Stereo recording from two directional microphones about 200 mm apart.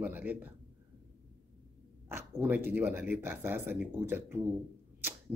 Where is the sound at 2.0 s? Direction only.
10° right (ahead or behind).